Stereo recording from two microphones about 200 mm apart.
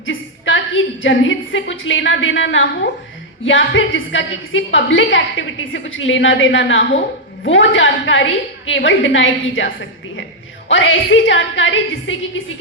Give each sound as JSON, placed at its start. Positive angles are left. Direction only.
{"t": 0.0, "sound": "a woman's voice", "side_deg": 70}
{"t": 10.7, "sound": "a woman's voice", "side_deg": 70}